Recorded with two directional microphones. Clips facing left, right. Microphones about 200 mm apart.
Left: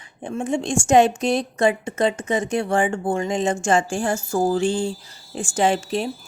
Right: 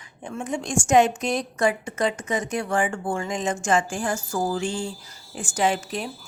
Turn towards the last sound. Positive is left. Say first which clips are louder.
# left 4 dB
turn(degrees=30)  # may be behind; listen again after turning